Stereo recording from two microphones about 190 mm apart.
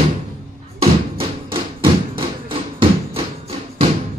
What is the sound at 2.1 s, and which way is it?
Music, 30° right (ahead or behind).